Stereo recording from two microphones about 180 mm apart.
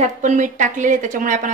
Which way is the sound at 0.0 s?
45° right (ahead or behind).